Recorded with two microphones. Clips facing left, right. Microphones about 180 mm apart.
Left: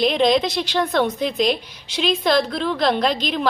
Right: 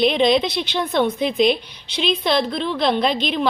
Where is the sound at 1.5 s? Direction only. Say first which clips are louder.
Right 2 dB; 45° left (ahead or behind).